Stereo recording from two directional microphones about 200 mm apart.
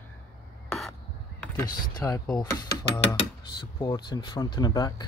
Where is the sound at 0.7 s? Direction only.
Centre (ahead or behind).